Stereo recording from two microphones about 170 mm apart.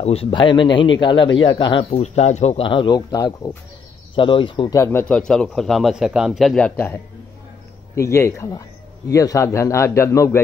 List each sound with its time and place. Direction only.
0.0 s a man's voice: 35° left (ahead or behind)
4.7 s a man's voice: 15° left (ahead or behind)
5.0 s a man's voice: 5° left (ahead or behind)
7.9 s a man's voice: 15° left (ahead or behind)